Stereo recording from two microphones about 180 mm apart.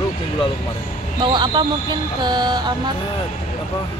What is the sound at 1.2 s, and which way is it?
Speech, 25° right (ahead or behind).